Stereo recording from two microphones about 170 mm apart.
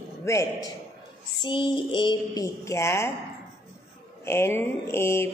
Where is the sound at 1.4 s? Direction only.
30° left (ahead or behind).